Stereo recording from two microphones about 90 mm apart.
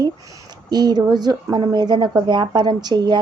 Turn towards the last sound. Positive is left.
turn(degrees=-50)  # may be behind; listen again after turning